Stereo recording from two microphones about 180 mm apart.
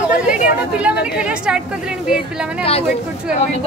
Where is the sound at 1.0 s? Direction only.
5° right (ahead or behind).